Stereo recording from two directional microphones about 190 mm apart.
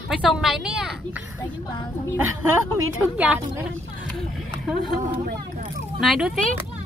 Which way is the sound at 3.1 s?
10° right (ahead or behind).